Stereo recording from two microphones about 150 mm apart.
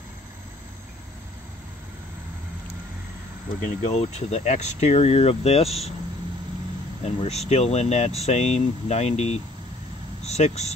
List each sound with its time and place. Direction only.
3.6 s speech: 50° left (ahead or behind)
7.0 s speech: 45° left (ahead or behind)